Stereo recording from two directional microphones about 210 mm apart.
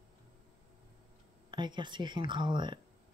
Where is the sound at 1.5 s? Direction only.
20° right (ahead or behind).